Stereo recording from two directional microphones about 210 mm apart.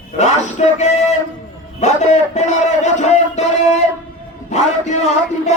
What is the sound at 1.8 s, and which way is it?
A man's voice, 35° left (ahead or behind).